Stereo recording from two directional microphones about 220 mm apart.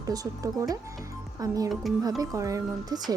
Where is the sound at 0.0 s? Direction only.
15° right (ahead or behind).